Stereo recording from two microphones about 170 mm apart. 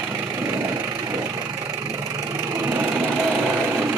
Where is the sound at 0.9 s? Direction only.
20° right (ahead or behind).